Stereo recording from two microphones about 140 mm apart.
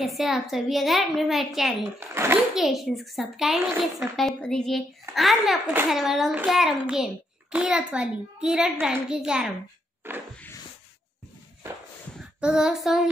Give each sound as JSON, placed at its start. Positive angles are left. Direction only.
{"t": 0.0, "sound": "a woman's voice", "side_deg": 0}
{"t": 2.0, "sound": "a child's voice", "side_deg": -15}
{"t": 2.5, "sound": "a woman's voice", "side_deg": 0}
{"t": 10.0, "sound": "a sound", "side_deg": -15}
{"t": 12.2, "sound": "child singing", "side_deg": -5}